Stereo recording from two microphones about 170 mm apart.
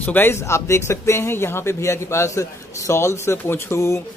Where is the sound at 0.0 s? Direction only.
10° left (ahead or behind).